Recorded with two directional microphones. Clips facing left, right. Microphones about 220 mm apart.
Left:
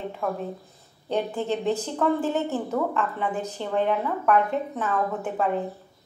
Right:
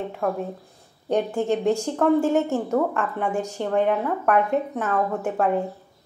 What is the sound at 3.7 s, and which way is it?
A woman's voice, 50° right (ahead or behind).